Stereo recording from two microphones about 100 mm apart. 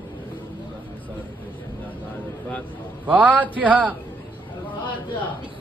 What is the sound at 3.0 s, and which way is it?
Speech, 15° right (ahead or behind).